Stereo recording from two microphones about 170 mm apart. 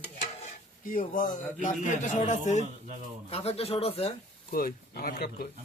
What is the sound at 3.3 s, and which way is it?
Speech, 35° left (ahead or behind).